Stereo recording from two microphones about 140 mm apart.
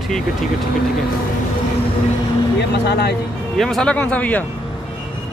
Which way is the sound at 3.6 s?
5° left (ahead or behind).